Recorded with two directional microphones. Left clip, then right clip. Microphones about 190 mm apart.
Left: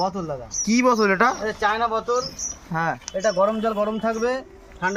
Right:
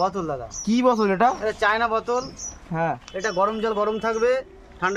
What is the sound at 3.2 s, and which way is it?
Speech, 30° right (ahead or behind).